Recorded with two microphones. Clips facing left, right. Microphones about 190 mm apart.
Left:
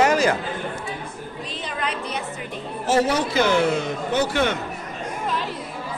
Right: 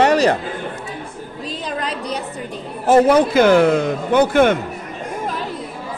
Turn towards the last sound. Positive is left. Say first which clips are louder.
# right 8 dB
turn(degrees=-50)  # may be behind; listen again after turning